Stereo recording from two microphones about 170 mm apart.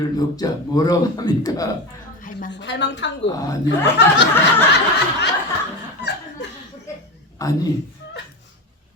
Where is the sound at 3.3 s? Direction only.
20° left (ahead or behind).